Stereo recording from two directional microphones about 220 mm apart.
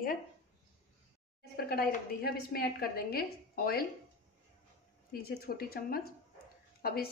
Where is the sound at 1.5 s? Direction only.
45° left (ahead or behind).